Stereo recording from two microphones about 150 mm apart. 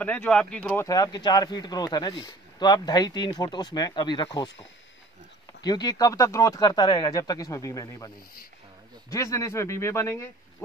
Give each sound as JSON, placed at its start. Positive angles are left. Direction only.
{"t": 0.0, "sound": "speech", "side_deg": 10}
{"t": 5.6, "sound": "speech", "side_deg": 30}
{"t": 9.1, "sound": "speech", "side_deg": 20}